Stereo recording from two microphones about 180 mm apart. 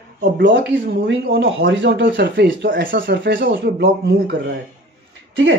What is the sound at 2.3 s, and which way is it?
Speech, 65° right (ahead or behind).